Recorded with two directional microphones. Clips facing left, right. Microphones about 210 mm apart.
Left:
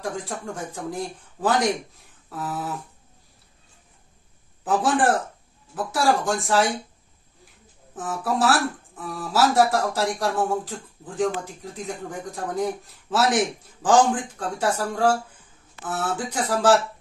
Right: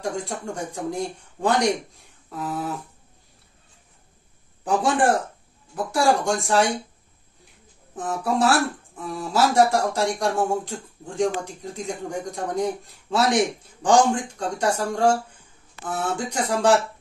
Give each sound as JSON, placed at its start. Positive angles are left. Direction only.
{"t": 0.0, "sound": "speech", "side_deg": 0}
{"t": 4.6, "sound": "speech", "side_deg": 0}
{"t": 7.9, "sound": "speech", "side_deg": 0}